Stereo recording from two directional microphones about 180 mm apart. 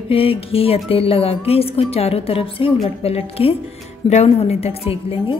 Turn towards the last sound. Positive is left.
turn(degrees=30)  # may be behind; listen again after turning